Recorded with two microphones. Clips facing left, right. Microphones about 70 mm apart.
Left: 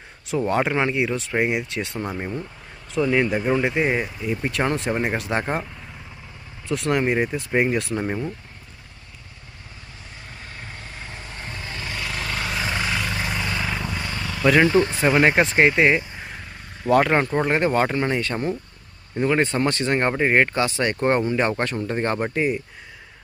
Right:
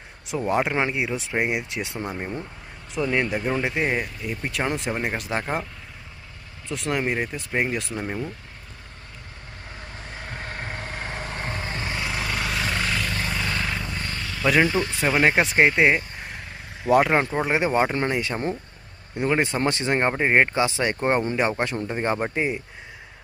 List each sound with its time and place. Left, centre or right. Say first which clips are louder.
0.3 s speech: left 2 dB; centre
6.7 s speech: left 4 dB; centre
10.2 s vehicle: right 6 dB; right; by 12.2 s centre
12.2 s vehicle: left 2 dB; centre
14.6 s speech: left 4 dB; left
14.9 s speech: left 3 dB; centre